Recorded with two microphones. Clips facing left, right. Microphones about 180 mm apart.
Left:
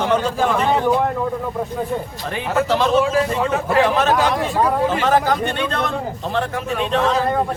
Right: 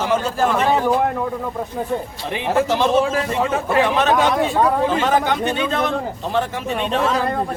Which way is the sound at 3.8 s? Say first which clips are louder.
Even; centre (ahead or behind).